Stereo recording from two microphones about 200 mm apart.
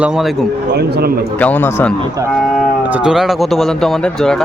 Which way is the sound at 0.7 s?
55° right (ahead or behind).